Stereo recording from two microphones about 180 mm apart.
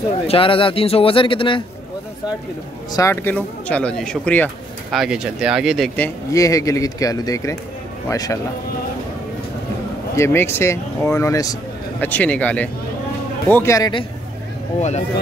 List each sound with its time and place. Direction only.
0.3 s speech: 30° left (ahead or behind)
2.9 s speech: 15° left (ahead or behind); by 5.9 s centre (ahead or behind)
5.9 s speech: 15° left (ahead or behind)
10.1 s speech: 15° left (ahead or behind)
14.8 s speech: 40° left (ahead or behind)